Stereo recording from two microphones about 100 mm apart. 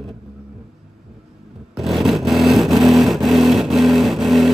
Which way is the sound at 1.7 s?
Centre (ahead or behind).